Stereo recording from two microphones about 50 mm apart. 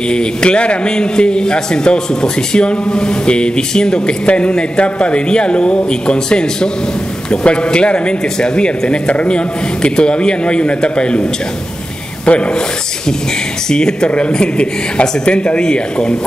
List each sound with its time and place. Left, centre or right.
0.1 s a man's voice: centre
12.3 s a man's voice: left
13.7 s speech: centre